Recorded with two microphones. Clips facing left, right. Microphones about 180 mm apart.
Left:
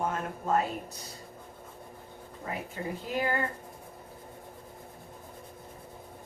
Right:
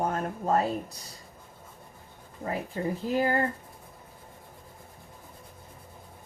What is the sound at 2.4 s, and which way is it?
Speech, 40° right (ahead or behind).